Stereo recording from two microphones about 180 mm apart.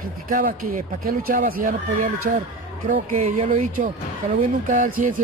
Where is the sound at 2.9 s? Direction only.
35° right (ahead or behind).